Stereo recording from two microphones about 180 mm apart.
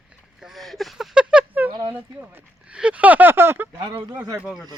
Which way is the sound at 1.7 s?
20° right (ahead or behind).